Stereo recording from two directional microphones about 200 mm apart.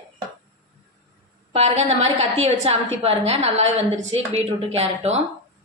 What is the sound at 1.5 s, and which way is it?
A woman's voice, 30° right (ahead or behind).